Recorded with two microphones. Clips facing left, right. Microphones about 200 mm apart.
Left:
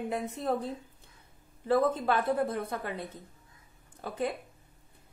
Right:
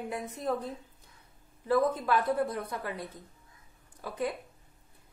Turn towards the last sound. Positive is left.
turn(degrees=25)  # may be behind; listen again after turning